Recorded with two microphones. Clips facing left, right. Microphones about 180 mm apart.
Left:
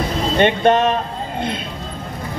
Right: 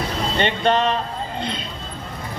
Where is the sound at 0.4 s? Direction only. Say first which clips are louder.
Left 5 dB; 50° left (ahead or behind).